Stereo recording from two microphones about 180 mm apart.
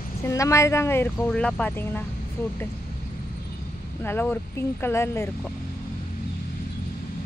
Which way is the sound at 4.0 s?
10° left (ahead or behind).